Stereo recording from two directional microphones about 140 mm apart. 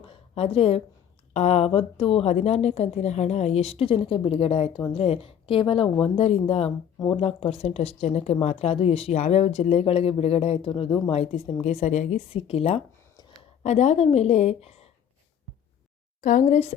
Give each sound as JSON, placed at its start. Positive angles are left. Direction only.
{"t": 0.0, "sound": "a sound", "side_deg": 40}
{"t": 1.3, "sound": "speech", "side_deg": 50}
{"t": 16.2, "sound": "a woman's voice", "side_deg": 70}